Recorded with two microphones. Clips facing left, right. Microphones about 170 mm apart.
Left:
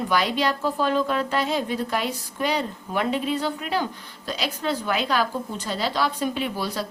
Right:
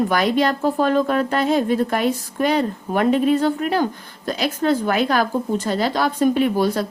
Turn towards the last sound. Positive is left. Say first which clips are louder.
# right 9 dB
turn(degrees=-50)  # may be behind; listen again after turning